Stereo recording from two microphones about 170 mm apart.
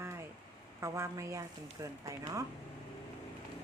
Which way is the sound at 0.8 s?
15° right (ahead or behind).